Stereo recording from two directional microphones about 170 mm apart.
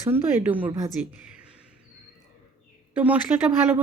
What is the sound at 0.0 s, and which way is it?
Speech, 15° right (ahead or behind).